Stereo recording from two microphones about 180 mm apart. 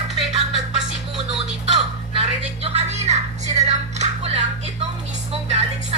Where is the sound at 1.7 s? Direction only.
35° right (ahead or behind).